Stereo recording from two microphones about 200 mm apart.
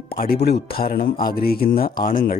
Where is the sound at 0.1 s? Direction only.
50° left (ahead or behind).